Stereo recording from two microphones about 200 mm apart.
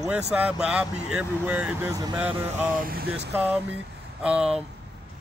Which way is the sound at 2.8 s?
55° right (ahead or behind).